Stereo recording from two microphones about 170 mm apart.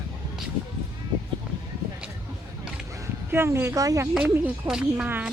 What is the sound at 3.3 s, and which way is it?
Speech, 15° right (ahead or behind).